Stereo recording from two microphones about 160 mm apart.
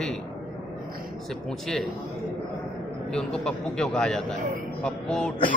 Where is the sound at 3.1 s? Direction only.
5° left (ahead or behind).